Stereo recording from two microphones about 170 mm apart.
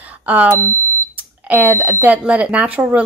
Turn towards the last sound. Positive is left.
turn(degrees=-10)  # may be behind; listen again after turning